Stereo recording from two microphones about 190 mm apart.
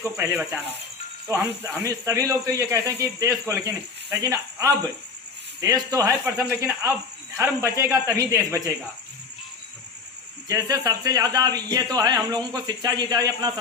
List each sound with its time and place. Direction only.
0.0 s speech: 15° right (ahead or behind)
10.5 s a man's voice: 20° right (ahead or behind)